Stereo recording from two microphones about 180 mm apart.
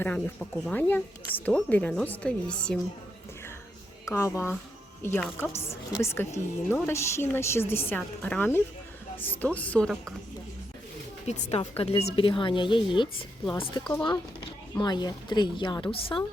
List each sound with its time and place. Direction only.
0.0 s speech: 5° left (ahead or behind)
4.0 s speech: 15° left (ahead or behind)
11.3 s a woman's voice: 40° left (ahead or behind)